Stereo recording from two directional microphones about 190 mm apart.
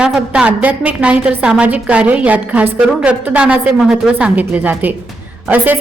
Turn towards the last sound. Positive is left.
turn(degrees=-10)  # may be behind; listen again after turning